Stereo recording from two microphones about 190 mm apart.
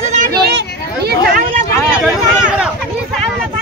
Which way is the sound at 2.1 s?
5° right (ahead or behind).